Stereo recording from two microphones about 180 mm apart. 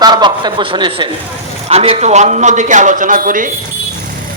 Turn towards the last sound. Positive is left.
turn(degrees=-50)  # may be behind; listen again after turning